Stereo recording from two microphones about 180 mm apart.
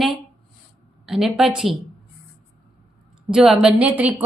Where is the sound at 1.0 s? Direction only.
Centre (ahead or behind).